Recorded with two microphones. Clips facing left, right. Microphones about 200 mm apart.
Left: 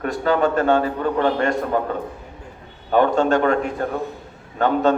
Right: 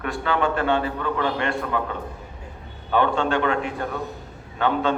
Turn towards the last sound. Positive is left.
turn(degrees=40)  # may be behind; listen again after turning